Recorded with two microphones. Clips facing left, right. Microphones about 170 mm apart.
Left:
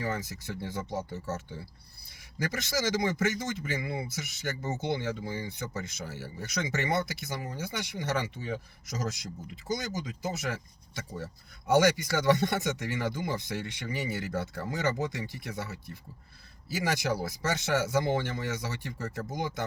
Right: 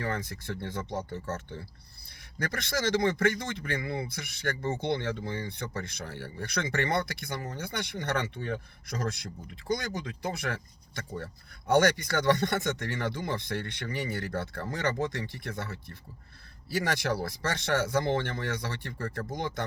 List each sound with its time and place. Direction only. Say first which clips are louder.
0.4 s a man's voice: right 1 dB; 10° left (ahead or behind)
9.1 s speech: left 1 dB; 55° right (ahead or behind)
9.7 s a man's voice: even; 5° left (ahead or behind)